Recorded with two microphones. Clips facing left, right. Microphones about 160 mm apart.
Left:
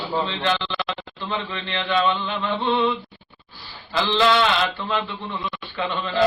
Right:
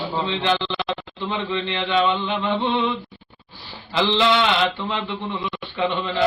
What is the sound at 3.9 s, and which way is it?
Mantra, 20° right (ahead or behind).